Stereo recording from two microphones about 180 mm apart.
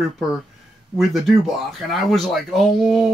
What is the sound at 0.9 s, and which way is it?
Speech, centre (ahead or behind).